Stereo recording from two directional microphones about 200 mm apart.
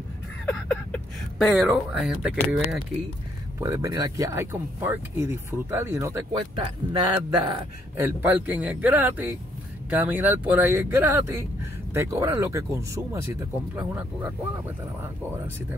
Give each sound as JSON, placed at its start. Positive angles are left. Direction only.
{"t": 0.5, "sound": "speech", "side_deg": 5}
{"t": 3.5, "sound": "speech", "side_deg": -15}
{"t": 8.0, "sound": "speech", "side_deg": -10}